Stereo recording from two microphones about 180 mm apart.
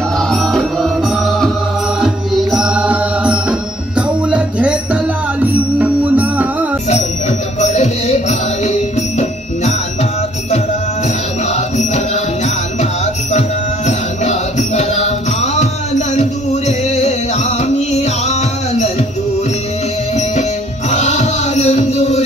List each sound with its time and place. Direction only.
0.3 s music: centre (ahead or behind)
7.6 s music: 40° left (ahead or behind)
11.5 s music: 40° left (ahead or behind)
13.8 s music: 40° left (ahead or behind)
20.9 s music: 40° left (ahead or behind)